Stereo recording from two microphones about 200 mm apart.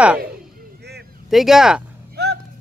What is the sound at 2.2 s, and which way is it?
Music, 55° right (ahead or behind).